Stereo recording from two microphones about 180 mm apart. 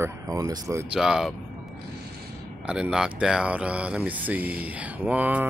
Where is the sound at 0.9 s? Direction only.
5° right (ahead or behind).